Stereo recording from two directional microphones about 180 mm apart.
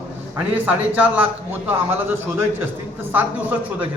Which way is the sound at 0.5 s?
10° right (ahead or behind).